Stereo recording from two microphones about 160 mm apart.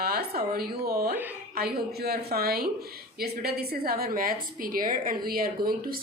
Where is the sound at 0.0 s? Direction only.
75° right (ahead or behind).